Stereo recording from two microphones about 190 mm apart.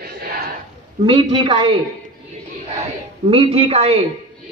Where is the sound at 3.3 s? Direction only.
30° right (ahead or behind).